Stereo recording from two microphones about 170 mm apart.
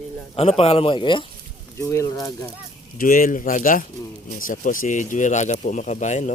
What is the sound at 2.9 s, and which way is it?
Speech, 55° left (ahead or behind).